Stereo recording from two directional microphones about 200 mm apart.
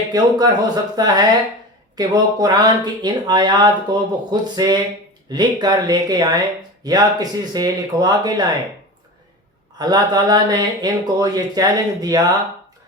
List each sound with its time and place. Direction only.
0.1 s speech: 20° right (ahead or behind)
9.7 s speech: 20° right (ahead or behind)